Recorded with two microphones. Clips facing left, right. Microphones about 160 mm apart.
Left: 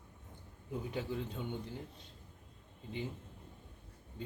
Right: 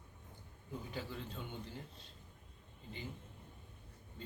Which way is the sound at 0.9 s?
20° left (ahead or behind).